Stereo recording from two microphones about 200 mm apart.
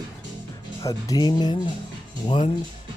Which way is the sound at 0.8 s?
15° left (ahead or behind).